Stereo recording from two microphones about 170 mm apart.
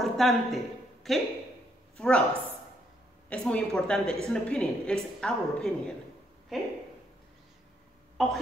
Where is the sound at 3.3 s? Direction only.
5° left (ahead or behind).